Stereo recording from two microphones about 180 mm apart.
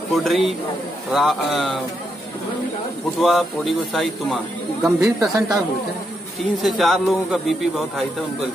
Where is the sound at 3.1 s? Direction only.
Centre (ahead or behind).